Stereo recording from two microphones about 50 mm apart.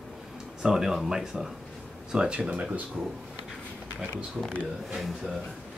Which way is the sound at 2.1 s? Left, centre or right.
Right.